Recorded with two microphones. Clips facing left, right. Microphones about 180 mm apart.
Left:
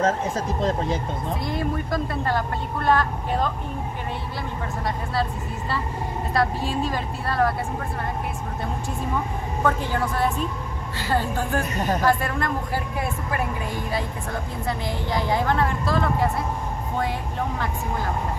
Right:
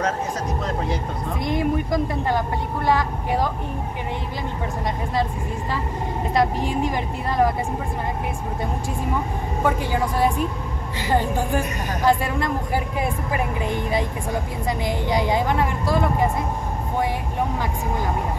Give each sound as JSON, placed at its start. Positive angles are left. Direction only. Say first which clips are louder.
{"t": 1.4, "sound": "speech", "louder": "right 8 dB", "side_deg": -15}
{"t": 6.3, "sound": "speech", "louder": "right 2 dB", "side_deg": -15}
{"t": 9.6, "sound": "speech", "louder": "right 1 dB", "side_deg": -10}